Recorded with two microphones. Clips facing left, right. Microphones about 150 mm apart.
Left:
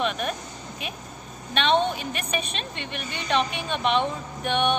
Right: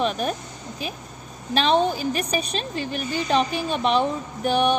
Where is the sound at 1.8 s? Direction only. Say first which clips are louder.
Right 4 dB; 35° right (ahead or behind).